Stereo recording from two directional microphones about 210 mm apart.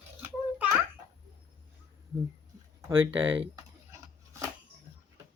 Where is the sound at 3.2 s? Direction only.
10° right (ahead or behind).